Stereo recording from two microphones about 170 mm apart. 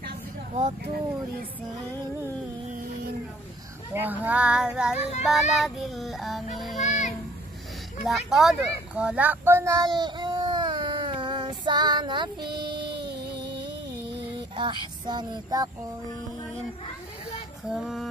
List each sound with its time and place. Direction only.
4.0 s speech: 10° right (ahead or behind)
5.5 s child singing: centre (ahead or behind)
6.8 s a sound: 45° left (ahead or behind)
8.0 s child singing: centre (ahead or behind); by 13.0 s 30° right (ahead or behind)
13.0 s music: 75° right (ahead or behind); by 14.2 s 90° right
14.5 s speech: 30° right (ahead or behind)
17.6 s child singing: centre (ahead or behind)